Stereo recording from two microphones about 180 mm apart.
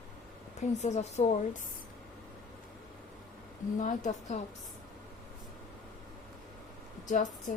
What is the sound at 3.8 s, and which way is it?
Speech, 45° left (ahead or behind).